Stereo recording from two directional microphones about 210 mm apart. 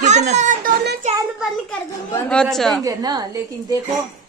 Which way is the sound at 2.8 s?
15° right (ahead or behind).